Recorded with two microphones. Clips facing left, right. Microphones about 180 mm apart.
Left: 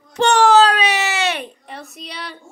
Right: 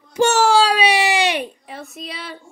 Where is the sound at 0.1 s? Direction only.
10° right (ahead or behind).